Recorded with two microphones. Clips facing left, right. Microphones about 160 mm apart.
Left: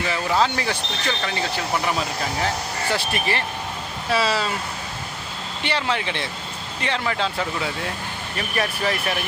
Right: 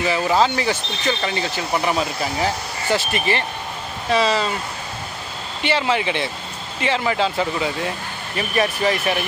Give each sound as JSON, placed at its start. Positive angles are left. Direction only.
{"t": 0.0, "sound": "speech", "side_deg": -5}
{"t": 5.6, "sound": "speech", "side_deg": -5}